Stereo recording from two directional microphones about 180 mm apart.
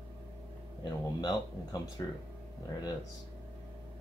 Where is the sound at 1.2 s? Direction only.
20° left (ahead or behind).